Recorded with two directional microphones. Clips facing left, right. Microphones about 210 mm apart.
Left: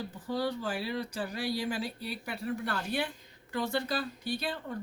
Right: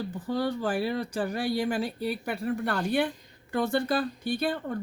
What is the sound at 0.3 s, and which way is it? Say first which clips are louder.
Speech: right 5 dB; 55° right (ahead or behind).